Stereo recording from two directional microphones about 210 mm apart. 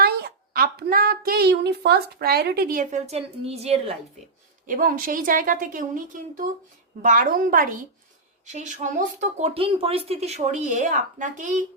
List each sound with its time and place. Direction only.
0.0 s a child's voice: 50° right (ahead or behind); by 3.9 s 30° right (ahead or behind)
4.6 s speech: 40° right (ahead or behind)